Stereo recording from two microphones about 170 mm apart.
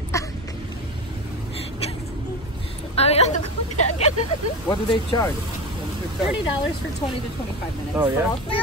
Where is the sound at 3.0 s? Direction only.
40° left (ahead or behind).